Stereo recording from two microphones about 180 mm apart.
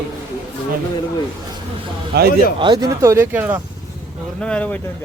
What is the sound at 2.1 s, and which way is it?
Speech, 65° right (ahead or behind).